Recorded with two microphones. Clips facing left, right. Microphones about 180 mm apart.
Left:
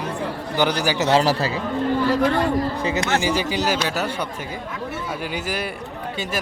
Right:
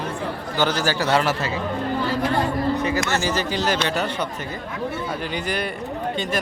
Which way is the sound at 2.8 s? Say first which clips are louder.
Even; 25° left (ahead or behind).